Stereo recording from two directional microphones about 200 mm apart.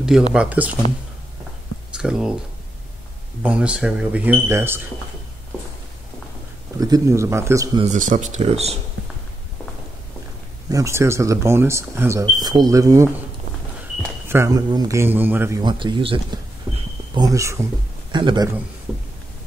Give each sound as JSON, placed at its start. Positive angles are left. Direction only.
{"t": 0.3, "sound": "speech", "side_deg": -5}
{"t": 2.0, "sound": "speech", "side_deg": -5}
{"t": 3.4, "sound": "speech", "side_deg": -5}
{"t": 6.8, "sound": "speech", "side_deg": -15}
{"t": 7.8, "sound": "speech", "side_deg": -40}
{"t": 10.7, "sound": "speech", "side_deg": -15}
{"t": 14.3, "sound": "speech", "side_deg": -15}
{"t": 15.6, "sound": "speech", "side_deg": -25}